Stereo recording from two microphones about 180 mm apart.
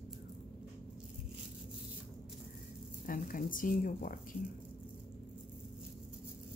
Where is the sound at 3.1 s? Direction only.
50° left (ahead or behind).